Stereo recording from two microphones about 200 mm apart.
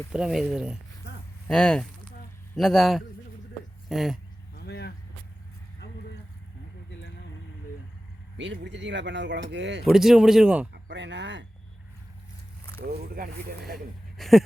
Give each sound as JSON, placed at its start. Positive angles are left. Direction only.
{"t": 0.1, "sound": "speech", "side_deg": -5}
{"t": 4.5, "sound": "vehicle", "side_deg": 55}
{"t": 8.4, "sound": "speech", "side_deg": -65}
{"t": 9.9, "sound": "speech", "side_deg": 0}
{"t": 10.8, "sound": "speech", "side_deg": -60}
{"t": 12.8, "sound": "speech", "side_deg": -50}
{"t": 14.2, "sound": "a sound", "side_deg": 0}